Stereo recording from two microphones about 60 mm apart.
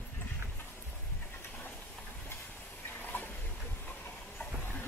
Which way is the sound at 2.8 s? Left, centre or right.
Left.